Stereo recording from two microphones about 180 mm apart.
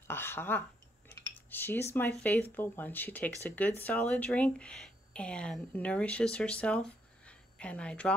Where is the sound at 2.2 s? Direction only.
10° left (ahead or behind).